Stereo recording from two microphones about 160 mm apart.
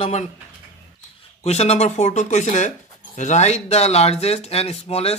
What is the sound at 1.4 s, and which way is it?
A man's voice, 45° left (ahead or behind).